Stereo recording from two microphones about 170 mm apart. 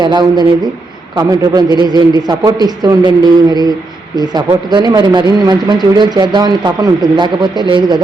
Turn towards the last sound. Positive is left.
turn(degrees=-25)  # may be behind; listen again after turning